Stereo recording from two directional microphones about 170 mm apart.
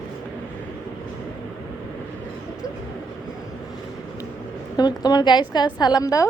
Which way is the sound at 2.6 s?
20° left (ahead or behind).